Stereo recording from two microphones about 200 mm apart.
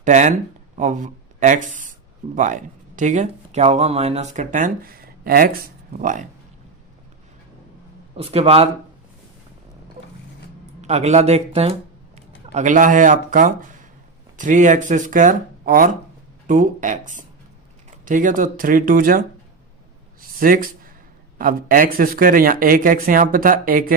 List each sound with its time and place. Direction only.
0.0 s speech: 35° right (ahead or behind)
8.1 s speech: 30° right (ahead or behind)
10.8 s speech: 35° right (ahead or behind)
20.4 s speech: 45° right (ahead or behind)